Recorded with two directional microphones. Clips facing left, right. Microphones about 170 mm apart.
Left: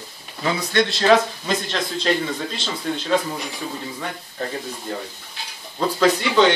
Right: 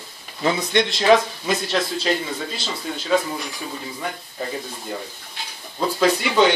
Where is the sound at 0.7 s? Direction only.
15° right (ahead or behind).